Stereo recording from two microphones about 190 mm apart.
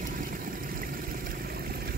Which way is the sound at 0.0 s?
45° right (ahead or behind).